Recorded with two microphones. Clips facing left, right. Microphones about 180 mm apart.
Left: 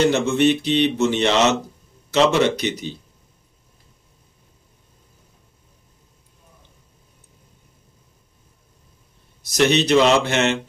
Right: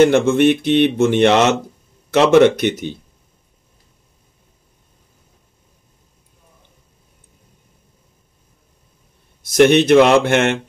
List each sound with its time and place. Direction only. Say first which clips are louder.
0.0 s speech: right 5 dB; 55° right (ahead or behind)
9.5 s speech: right 6 dB; 55° right (ahead or behind)